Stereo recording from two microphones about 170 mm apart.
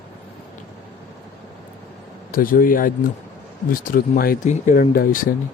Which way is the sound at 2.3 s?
55° left (ahead or behind).